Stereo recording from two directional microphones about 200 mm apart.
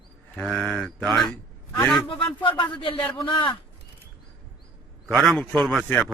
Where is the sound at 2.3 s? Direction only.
25° left (ahead or behind).